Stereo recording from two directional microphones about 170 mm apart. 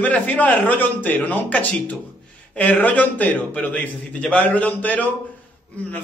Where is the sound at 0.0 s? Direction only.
10° left (ahead or behind).